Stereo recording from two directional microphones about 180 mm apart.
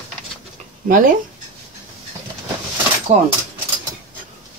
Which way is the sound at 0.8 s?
50° right (ahead or behind).